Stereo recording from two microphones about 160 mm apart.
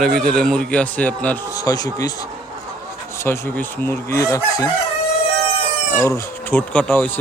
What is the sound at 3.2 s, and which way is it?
Speech, 15° left (ahead or behind).